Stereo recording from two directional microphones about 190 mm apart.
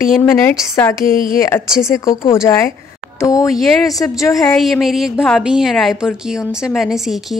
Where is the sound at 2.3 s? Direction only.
15° left (ahead or behind).